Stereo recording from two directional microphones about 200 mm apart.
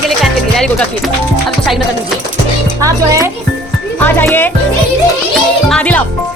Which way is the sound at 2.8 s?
15° right (ahead or behind).